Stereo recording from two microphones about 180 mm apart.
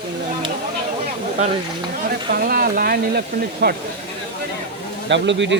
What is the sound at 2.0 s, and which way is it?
Speech, 55° right (ahead or behind).